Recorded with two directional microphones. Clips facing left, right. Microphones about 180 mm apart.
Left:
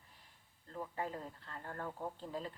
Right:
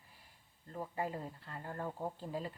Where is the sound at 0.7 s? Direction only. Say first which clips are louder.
Right 2 dB; 15° right (ahead or behind).